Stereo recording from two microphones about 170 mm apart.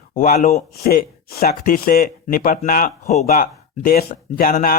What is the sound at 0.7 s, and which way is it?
Speech, 60° left (ahead or behind).